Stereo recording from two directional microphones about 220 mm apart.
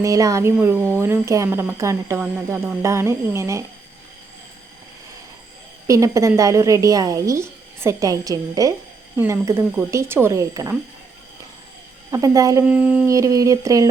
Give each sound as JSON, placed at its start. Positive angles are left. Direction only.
{"t": 0.0, "sound": "speech", "side_deg": -15}
{"t": 5.9, "sound": "speech", "side_deg": -15}
{"t": 12.1, "sound": "speech", "side_deg": -15}